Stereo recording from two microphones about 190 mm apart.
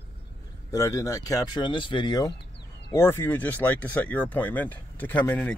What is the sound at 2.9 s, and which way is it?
Speech, 10° left (ahead or behind).